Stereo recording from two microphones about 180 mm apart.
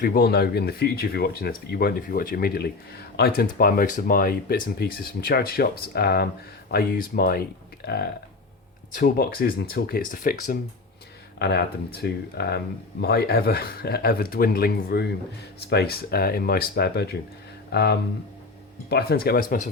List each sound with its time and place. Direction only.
0.0 s speech: 55° left (ahead or behind)
8.9 s speech: 50° left (ahead or behind)
11.3 s speech: 65° left (ahead or behind); by 19.7 s 45° left (ahead or behind)